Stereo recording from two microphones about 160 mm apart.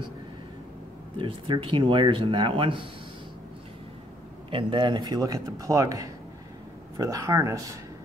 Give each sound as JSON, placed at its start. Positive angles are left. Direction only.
{"t": 1.1, "sound": "speech", "side_deg": -30}
{"t": 4.5, "sound": "speech", "side_deg": -30}